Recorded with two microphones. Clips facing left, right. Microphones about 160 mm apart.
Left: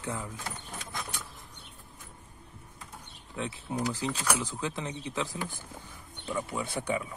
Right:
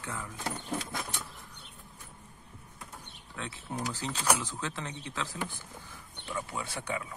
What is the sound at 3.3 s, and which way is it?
Speech, 20° left (ahead or behind).